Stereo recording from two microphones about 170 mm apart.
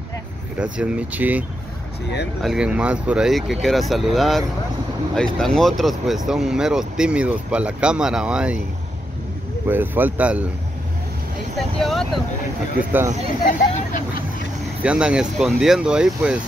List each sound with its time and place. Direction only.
0.6 s speech: 5° right (ahead or behind)
2.4 s speech: 5° right (ahead or behind)
9.7 s speech: 10° right (ahead or behind)
11.5 s speech: centre (ahead or behind)
13.0 s speech: 45° right (ahead or behind)
13.4 s speech: 50° left (ahead or behind)
14.8 s speech: 5° right (ahead or behind)